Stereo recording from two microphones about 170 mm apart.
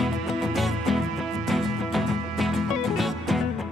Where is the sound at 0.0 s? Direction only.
Centre (ahead or behind).